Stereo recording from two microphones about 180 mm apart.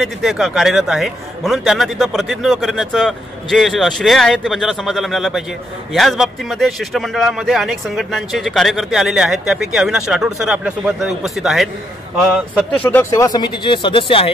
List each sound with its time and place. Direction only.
0.0 s a man's voice: centre (ahead or behind)
12.8 s speech: 15° left (ahead or behind); by 14.3 s 30° left (ahead or behind)